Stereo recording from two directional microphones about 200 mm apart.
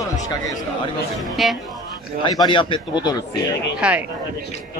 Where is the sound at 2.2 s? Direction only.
20° left (ahead or behind).